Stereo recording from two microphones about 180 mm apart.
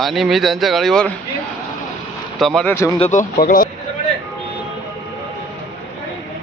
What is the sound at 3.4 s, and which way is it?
Speech, 50° left (ahead or behind).